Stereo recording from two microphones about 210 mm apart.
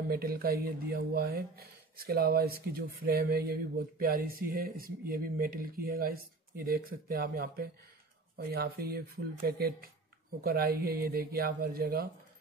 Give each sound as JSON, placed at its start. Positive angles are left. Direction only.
{"t": 0.1, "sound": "speech", "side_deg": -45}